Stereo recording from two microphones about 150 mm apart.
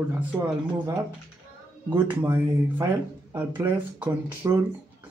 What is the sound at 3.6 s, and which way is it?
Speech, 20° right (ahead or behind).